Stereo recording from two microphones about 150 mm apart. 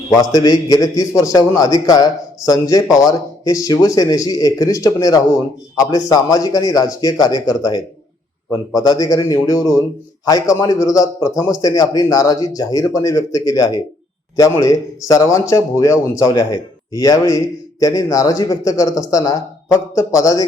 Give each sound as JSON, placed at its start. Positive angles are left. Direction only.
{"t": 0.1, "sound": "a man's voice", "side_deg": 25}